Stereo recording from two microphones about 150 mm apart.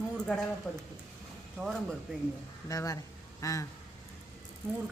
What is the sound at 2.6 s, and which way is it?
A man's voice, 20° left (ahead or behind).